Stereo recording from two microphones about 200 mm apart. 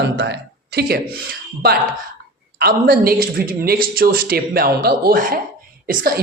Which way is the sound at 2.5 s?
50° right (ahead or behind).